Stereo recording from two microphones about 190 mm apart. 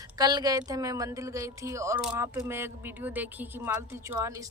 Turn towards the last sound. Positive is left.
turn(degrees=-10)  # may be behind; listen again after turning